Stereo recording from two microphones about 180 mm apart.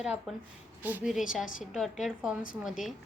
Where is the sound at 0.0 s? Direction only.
5° right (ahead or behind).